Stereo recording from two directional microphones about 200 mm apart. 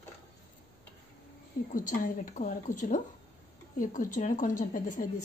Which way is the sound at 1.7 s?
40° left (ahead or behind).